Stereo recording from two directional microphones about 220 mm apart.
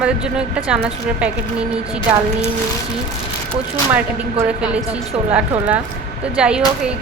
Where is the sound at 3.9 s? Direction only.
10° right (ahead or behind).